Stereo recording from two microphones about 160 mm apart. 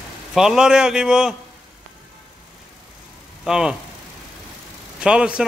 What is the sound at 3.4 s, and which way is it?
Speech, 5° right (ahead or behind).